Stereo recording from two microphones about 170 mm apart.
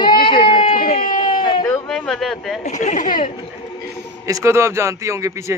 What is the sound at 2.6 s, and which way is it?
Speech, 45° left (ahead or behind).